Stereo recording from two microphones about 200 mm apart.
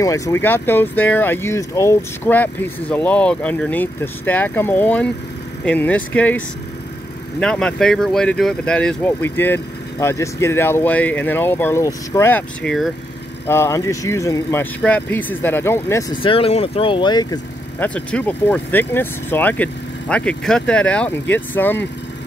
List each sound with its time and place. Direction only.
0.0 s speech: 15° left (ahead or behind); by 12.9 s centre (ahead or behind)
13.5 s speech: 15° left (ahead or behind)
17.7 s speech: 5° left (ahead or behind)